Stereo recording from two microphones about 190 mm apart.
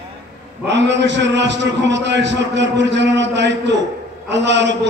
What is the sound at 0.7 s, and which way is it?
A man's voice, 70° right (ahead or behind).